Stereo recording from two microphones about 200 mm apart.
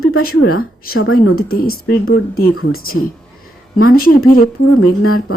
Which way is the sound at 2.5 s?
90° left.